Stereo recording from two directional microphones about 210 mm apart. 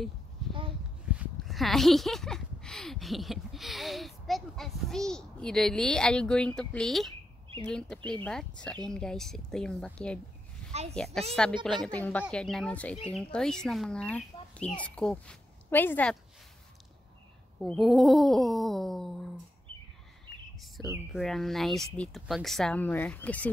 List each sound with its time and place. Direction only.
0.5 s a sound: 25° right (ahead or behind)
1.1 s speech: 5° right (ahead or behind)
10.7 s a child's voice: 30° right (ahead or behind)
11.6 s speech: centre (ahead or behind)
17.6 s speech: centre (ahead or behind)
21.1 s speech: centre (ahead or behind)